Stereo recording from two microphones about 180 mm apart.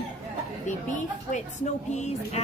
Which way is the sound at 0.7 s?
45° left (ahead or behind).